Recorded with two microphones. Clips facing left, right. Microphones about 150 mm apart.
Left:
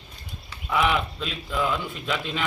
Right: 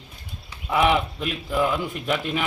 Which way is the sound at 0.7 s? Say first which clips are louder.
Right 3 dB; 15° right (ahead or behind).